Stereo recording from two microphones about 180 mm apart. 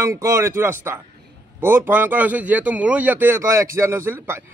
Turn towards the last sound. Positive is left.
turn(degrees=-15)  # may be behind; listen again after turning